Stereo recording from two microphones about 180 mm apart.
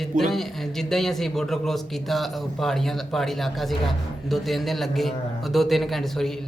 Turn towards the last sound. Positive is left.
turn(degrees=0)  # may be behind; listen again after turning